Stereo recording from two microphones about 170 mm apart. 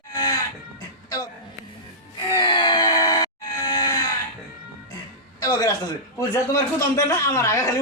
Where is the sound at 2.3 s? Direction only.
25° left (ahead or behind).